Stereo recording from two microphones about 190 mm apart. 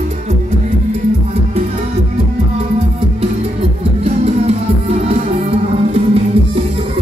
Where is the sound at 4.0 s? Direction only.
35° right (ahead or behind).